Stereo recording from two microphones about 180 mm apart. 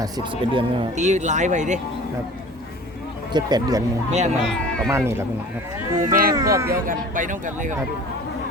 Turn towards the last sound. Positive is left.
turn(degrees=-45)  # may be behind; listen again after turning